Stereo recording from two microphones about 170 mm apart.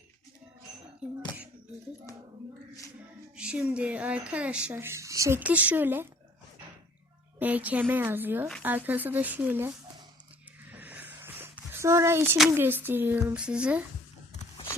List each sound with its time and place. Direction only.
3.3 s speech: 5° right (ahead or behind)
7.3 s speech: 10° right (ahead or behind)
10.7 s a sound: 10° right (ahead or behind)
12.5 s speech: 10° right (ahead or behind)